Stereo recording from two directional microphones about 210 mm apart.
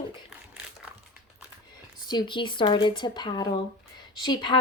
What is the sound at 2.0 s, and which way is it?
Speech, 20° left (ahead or behind).